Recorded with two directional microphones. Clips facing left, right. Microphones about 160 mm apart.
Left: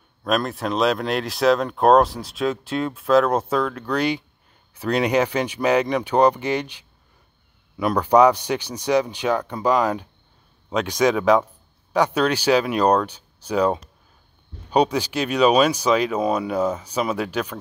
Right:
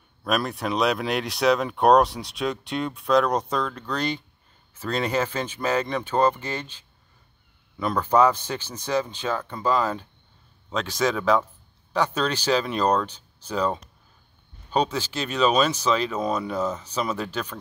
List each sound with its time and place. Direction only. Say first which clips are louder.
0.2 s speech: left 3 dB; 5° right (ahead or behind)